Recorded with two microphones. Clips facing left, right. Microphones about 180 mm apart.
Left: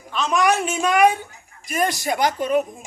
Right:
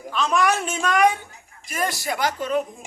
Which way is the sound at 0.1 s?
5° left (ahead or behind).